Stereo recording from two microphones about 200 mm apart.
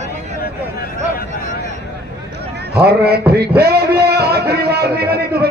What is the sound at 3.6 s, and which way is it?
A man's voice, 50° right (ahead or behind).